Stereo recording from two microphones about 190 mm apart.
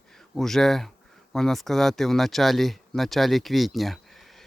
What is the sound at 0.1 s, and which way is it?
Speech, centre (ahead or behind).